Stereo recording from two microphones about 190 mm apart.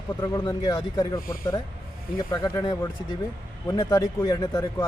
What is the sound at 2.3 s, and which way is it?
A man's voice, 20° left (ahead or behind).